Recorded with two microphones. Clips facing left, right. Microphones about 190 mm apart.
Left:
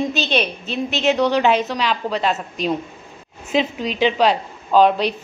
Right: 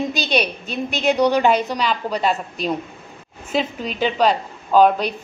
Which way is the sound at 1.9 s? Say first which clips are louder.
Right 1 dB; centre (ahead or behind).